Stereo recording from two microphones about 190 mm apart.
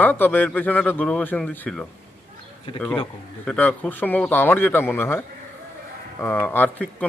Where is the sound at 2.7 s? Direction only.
25° left (ahead or behind).